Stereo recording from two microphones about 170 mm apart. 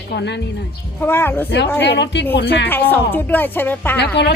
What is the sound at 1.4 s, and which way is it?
Speech, 75° left (ahead or behind).